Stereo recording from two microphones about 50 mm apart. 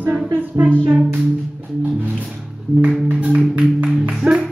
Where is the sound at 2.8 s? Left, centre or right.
Right.